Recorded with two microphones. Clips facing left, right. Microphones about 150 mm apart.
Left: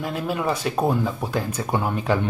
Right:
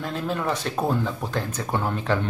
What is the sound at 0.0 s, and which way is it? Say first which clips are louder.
Speech: left 2 dB; 10° left (ahead or behind).